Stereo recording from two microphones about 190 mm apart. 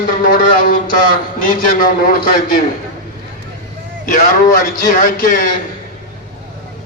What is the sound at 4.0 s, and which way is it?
Speech, 45° left (ahead or behind).